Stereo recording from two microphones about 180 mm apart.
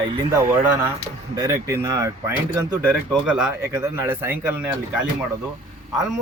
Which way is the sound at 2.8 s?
5° right (ahead or behind).